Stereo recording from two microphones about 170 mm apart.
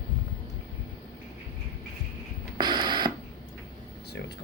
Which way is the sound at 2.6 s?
25° right (ahead or behind).